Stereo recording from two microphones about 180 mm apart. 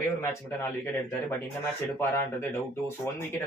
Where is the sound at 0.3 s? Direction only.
15° left (ahead or behind).